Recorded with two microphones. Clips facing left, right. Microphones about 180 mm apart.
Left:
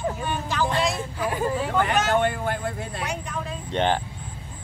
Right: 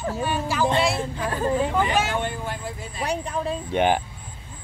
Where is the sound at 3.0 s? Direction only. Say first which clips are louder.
Right 5 dB; 35° right (ahead or behind).